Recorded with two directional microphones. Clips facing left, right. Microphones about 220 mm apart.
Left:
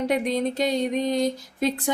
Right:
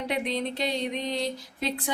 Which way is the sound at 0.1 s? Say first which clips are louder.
Left 6 dB; 45° left (ahead or behind).